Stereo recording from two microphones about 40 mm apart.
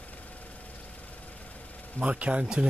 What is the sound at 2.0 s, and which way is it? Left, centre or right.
Speech, right.